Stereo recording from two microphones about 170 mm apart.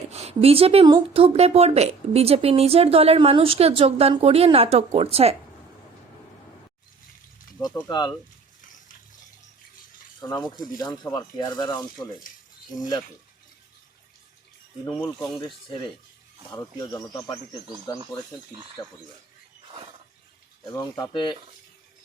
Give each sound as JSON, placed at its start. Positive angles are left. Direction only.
{"t": 0.1, "sound": "speech", "side_deg": -40}
{"t": 7.9, "sound": "speech", "side_deg": 25}
{"t": 10.2, "sound": "speech", "side_deg": 20}
{"t": 14.8, "sound": "speech", "side_deg": 10}
{"t": 16.5, "sound": "speech", "side_deg": 20}
{"t": 20.7, "sound": "speech", "side_deg": 20}